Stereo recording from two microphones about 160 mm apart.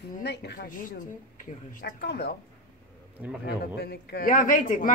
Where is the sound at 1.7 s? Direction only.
90° left.